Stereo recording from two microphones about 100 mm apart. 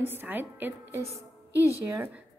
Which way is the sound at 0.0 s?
20° right (ahead or behind).